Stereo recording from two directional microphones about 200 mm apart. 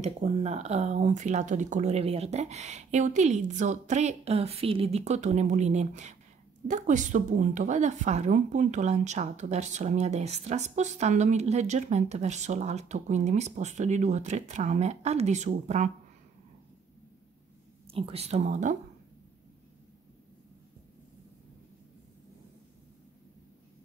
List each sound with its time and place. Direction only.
0.0 s a woman's voice: 35° right (ahead or behind)
17.8 s a woman's voice: 30° right (ahead or behind)